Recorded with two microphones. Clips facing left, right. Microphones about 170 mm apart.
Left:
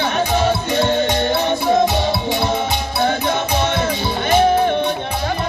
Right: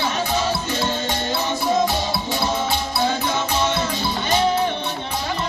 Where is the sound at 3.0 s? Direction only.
60° left (ahead or behind).